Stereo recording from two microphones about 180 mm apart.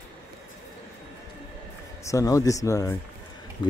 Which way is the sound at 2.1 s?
20° left (ahead or behind).